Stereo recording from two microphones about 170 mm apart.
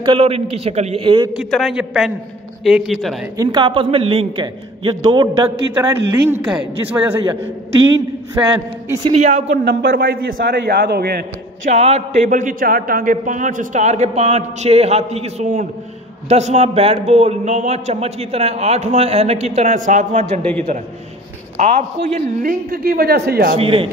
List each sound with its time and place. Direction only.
0.0 s a man's voice: 30° right (ahead or behind)
1.3 s a man's voice: centre (ahead or behind)
3.3 s a man's voice: 25° right (ahead or behind)
5.8 s a woman's voice: 10° right (ahead or behind)
8.5 s a man's voice: 15° right (ahead or behind)
9.1 s a man's voice: 40° right (ahead or behind)
9.7 s a man's voice: 75° right (ahead or behind)
11.7 s a man's voice: 40° right (ahead or behind)
21.5 s a man's voice: 40° right (ahead or behind)
22.4 s a man's voice: 55° right (ahead or behind)
23.6 s a man's voice: 30° right (ahead or behind)